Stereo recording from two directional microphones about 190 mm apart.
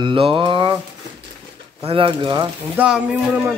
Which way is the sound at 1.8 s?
30° right (ahead or behind).